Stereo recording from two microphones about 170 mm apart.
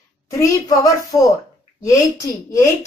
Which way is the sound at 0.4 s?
20° left (ahead or behind).